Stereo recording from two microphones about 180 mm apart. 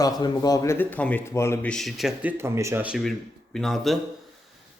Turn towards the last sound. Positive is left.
turn(degrees=0)  # may be behind; listen again after turning